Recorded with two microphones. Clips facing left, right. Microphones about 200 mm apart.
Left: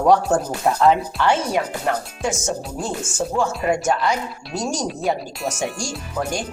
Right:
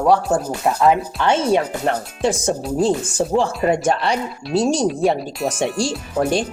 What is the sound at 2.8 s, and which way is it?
Speech, 30° right (ahead or behind).